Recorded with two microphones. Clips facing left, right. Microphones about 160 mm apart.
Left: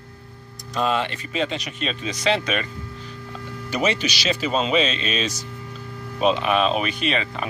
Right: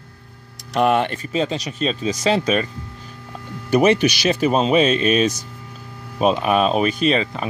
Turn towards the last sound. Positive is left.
turn(degrees=-35)  # may be behind; listen again after turning